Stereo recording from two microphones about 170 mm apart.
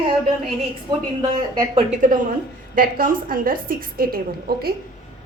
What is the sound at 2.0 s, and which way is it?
A woman's voice, 50° right (ahead or behind).